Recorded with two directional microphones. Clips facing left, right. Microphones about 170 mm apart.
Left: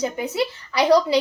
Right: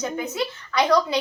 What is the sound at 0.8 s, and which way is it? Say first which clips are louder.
Speech: left 4 dB; 35° left (ahead or behind).